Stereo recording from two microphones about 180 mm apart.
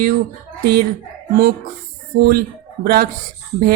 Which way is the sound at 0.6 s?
60° right (ahead or behind).